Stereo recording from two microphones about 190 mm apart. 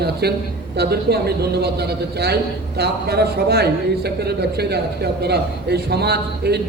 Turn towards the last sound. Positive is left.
turn(degrees=-60)  # may be behind; listen again after turning